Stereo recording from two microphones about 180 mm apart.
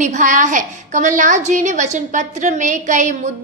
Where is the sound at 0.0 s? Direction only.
45° right (ahead or behind).